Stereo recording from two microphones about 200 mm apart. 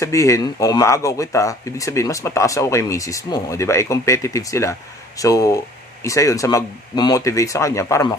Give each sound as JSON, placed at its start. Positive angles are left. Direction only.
{"t": 0.0, "sound": "speech", "side_deg": 15}